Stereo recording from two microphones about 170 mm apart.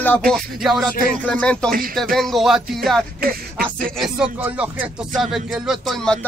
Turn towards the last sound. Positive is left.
turn(degrees=5)  # may be behind; listen again after turning